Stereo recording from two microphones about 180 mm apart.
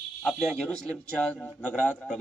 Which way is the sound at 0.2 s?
5° left (ahead or behind).